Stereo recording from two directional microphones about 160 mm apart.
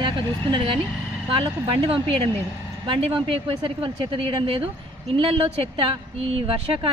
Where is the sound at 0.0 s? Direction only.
30° right (ahead or behind).